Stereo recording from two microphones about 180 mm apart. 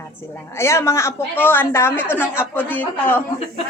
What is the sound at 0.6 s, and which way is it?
A woman's voice, 15° left (ahead or behind).